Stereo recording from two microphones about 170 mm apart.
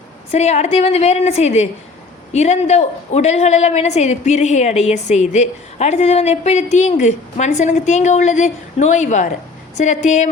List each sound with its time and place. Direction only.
0.3 s a woman's voice: 40° left (ahead or behind)